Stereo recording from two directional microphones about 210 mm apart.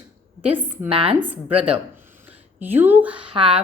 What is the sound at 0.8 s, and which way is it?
Speech, 25° right (ahead or behind).